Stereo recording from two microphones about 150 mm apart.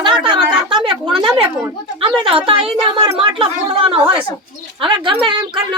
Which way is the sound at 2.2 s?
35° right (ahead or behind).